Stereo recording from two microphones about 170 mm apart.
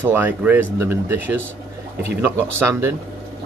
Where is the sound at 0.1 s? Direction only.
10° right (ahead or behind).